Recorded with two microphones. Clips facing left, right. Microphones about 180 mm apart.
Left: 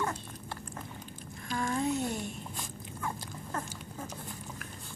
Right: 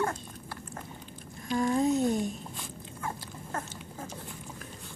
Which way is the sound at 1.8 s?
40° right (ahead or behind).